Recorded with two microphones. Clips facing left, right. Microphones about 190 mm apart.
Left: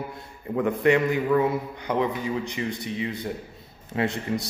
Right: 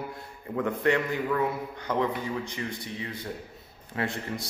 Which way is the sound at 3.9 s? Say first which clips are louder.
Left 5 dB; 20° left (ahead or behind).